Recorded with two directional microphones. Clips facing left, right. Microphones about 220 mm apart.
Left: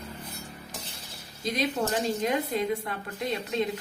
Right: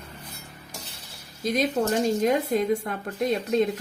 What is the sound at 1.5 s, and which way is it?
A woman's voice, 45° right (ahead or behind).